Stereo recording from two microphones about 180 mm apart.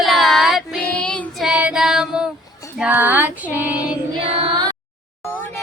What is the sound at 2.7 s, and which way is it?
Female singing, 10° right (ahead or behind).